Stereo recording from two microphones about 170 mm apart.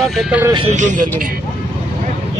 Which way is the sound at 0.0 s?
Centre (ahead or behind).